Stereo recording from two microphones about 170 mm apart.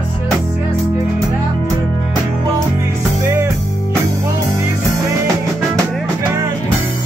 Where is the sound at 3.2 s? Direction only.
15° right (ahead or behind).